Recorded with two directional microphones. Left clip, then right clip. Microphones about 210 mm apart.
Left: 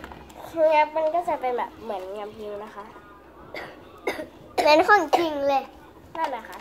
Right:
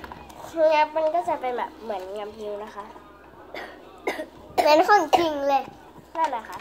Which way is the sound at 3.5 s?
Centre (ahead or behind).